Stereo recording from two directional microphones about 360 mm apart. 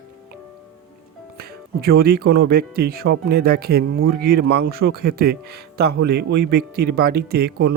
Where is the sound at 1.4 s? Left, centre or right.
Right.